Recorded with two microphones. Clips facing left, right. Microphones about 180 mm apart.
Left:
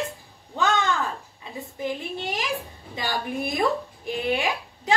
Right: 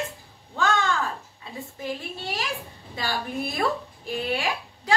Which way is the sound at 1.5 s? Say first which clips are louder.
Left 3 dB; 20° left (ahead or behind).